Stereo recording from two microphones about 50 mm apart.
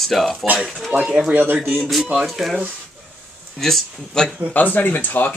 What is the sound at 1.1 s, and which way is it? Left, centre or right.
Speech, centre.